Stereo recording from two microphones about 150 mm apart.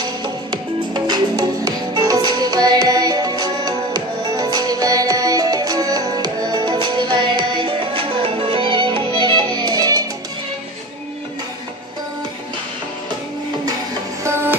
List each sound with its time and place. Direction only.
0.0 s music: 30° right (ahead or behind)
14.2 s music: 15° right (ahead or behind)